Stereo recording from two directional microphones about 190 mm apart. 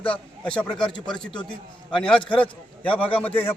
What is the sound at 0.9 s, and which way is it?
Speech, 25° left (ahead or behind).